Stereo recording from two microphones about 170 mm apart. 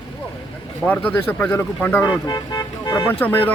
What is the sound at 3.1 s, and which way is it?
Speech, 10° left (ahead or behind).